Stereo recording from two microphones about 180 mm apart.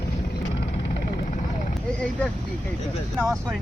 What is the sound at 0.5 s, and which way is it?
Vehicle, 70° left (ahead or behind).